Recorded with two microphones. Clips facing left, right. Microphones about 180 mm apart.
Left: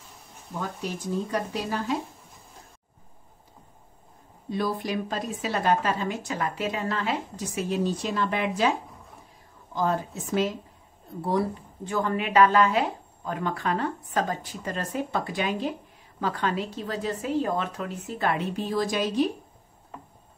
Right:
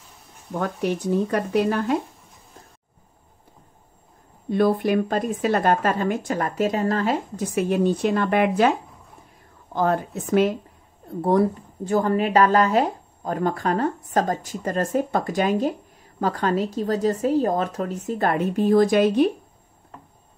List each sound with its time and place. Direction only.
0.6 s speech: 65° right (ahead or behind)
4.5 s speech: 55° right (ahead or behind)
9.8 s speech: 55° right (ahead or behind)